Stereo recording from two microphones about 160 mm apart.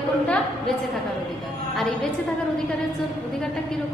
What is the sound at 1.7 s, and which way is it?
Speech, centre (ahead or behind).